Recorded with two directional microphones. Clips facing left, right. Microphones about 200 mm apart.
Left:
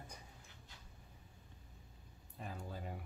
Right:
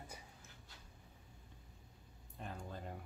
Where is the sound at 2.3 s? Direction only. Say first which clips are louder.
Even; 5° left (ahead or behind).